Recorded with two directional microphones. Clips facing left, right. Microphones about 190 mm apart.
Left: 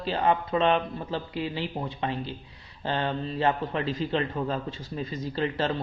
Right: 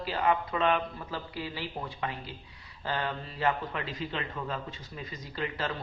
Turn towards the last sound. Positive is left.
turn(degrees=30)  # may be behind; listen again after turning